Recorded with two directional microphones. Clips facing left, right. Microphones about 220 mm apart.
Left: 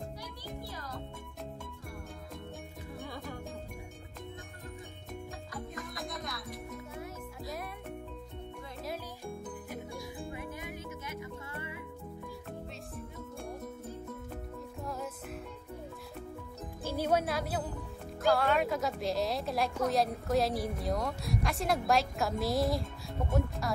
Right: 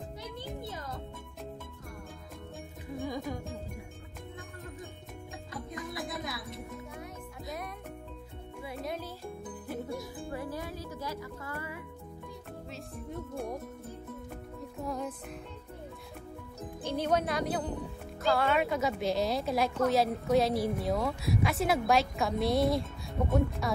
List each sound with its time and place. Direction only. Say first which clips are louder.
0.2 s music: right 3 dB; 20° right (ahead or behind)
5.9 s music: right 3 dB; 5° right (ahead or behind)
9.8 s music: right 3 dB; centre (ahead or behind)
10.3 s music: right 4 dB; 20° left (ahead or behind)
14.8 s music: right 4 dB; centre (ahead or behind)
16.8 s a woman's voice: right 1 dB; 5° left (ahead or behind)